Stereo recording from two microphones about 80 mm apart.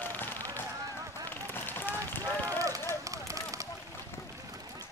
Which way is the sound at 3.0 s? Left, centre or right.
Right.